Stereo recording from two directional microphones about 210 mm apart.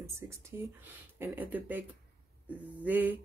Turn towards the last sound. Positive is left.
turn(degrees=-10)  # may be behind; listen again after turning